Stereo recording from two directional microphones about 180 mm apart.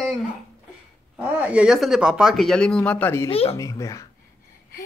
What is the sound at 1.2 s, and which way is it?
Speech, 5° right (ahead or behind).